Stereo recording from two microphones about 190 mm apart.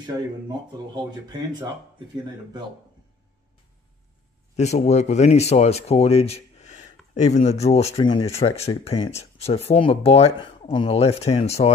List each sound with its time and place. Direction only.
0.0 s speech: 20° right (ahead or behind)
4.6 s speech: 35° left (ahead or behind)
7.8 s speech: 20° left (ahead or behind)
8.5 s speech: 30° left (ahead or behind)